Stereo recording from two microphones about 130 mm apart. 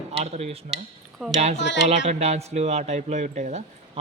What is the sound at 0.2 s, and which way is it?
Speech, 55° right (ahead or behind).